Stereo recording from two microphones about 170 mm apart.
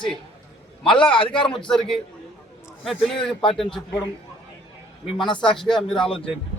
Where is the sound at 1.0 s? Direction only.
30° left (ahead or behind).